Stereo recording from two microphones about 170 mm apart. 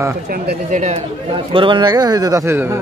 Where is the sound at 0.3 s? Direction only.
55° right (ahead or behind).